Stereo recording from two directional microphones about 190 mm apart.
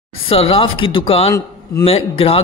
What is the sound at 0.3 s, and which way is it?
A man's voice, 30° left (ahead or behind).